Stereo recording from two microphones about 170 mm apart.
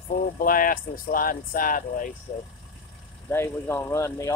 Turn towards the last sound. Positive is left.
turn(degrees=20)  # may be behind; listen again after turning